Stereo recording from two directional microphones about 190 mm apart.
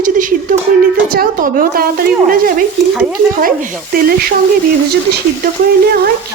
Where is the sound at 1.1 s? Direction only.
50° right (ahead or behind).